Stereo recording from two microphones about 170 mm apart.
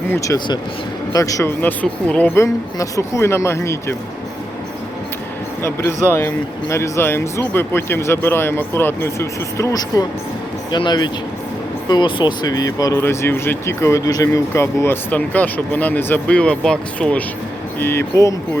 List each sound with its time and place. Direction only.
0.1 s speech: 20° left (ahead or behind)
6.1 s speech: 15° left (ahead or behind)